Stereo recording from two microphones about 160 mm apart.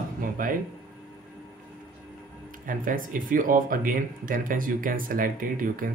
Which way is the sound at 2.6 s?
60° right (ahead or behind).